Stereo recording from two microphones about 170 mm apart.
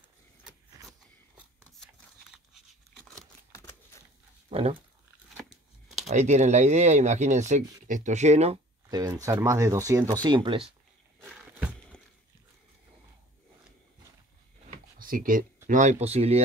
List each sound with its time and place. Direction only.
3.5 s a sound: 15° left (ahead or behind)
4.5 s speech: 35° right (ahead or behind)
6.0 s speech: 45° right (ahead or behind)
8.8 s speech: 20° right (ahead or behind)
11.9 s a sound: 5° left (ahead or behind)
15.0 s speech: 55° right (ahead or behind); by 16.4 s 40° right (ahead or behind)